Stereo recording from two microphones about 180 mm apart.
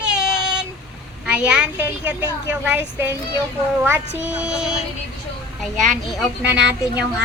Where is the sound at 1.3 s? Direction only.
5° right (ahead or behind).